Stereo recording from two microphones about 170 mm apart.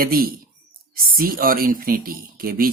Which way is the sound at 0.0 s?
60° right (ahead or behind).